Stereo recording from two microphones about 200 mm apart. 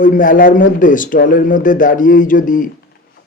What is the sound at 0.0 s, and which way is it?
Speech, 40° left (ahead or behind).